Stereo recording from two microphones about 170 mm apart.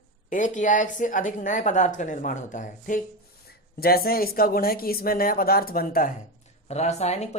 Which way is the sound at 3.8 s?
60° left (ahead or behind).